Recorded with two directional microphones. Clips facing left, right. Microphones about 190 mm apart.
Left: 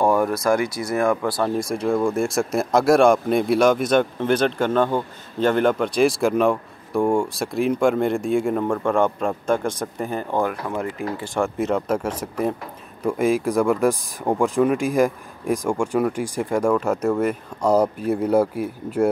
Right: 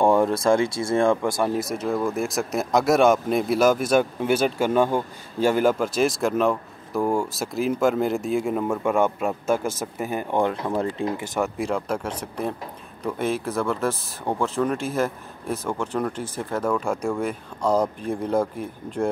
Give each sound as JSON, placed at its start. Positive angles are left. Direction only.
{"t": 0.0, "sound": "speech", "side_deg": -25}
{"t": 1.4, "sound": "speech", "side_deg": -5}
{"t": 10.4, "sound": "speech", "side_deg": -25}
{"t": 11.3, "sound": "speech", "side_deg": 0}